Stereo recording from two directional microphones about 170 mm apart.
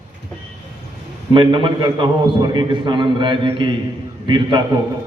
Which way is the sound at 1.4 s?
30° right (ahead or behind).